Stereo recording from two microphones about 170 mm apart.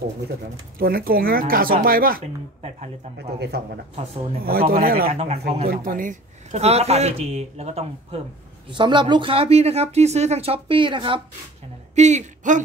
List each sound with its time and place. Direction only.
0.7 s speech: 60° right (ahead or behind)
3.2 s speech: 75° right (ahead or behind)
4.5 s speech: 60° right (ahead or behind)
5.1 s speech: 40° right (ahead or behind)
5.7 s speech: 55° right (ahead or behind); by 8.2 s 40° right (ahead or behind)
8.6 s speech: 25° right (ahead or behind)
11.9 s speech: 40° right (ahead or behind)